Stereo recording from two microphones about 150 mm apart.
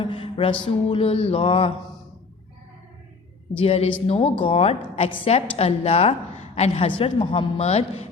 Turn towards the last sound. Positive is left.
turn(degrees=40)  # may be behind; listen again after turning